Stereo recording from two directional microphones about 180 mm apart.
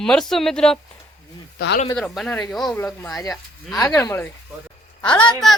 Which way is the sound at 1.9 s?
Centre (ahead or behind).